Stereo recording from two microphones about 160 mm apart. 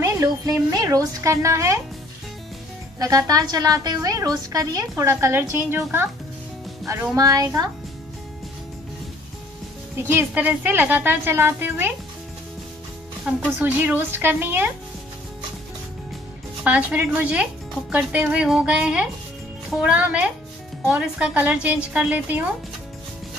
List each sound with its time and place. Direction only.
0.0 s a woman's voice: 20° right (ahead or behind)
3.0 s a woman's voice: 20° right (ahead or behind)
7.2 s a woman's voice: 20° right (ahead or behind)
10.0 s speech: 10° right (ahead or behind)
13.3 s speech: 5° right (ahead or behind)
16.6 s speech: 10° right (ahead or behind)